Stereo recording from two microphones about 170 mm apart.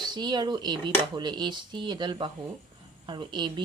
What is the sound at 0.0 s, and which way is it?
A woman's voice, 25° right (ahead or behind).